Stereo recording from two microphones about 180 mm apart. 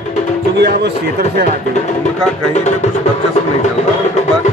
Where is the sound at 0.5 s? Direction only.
65° right (ahead or behind).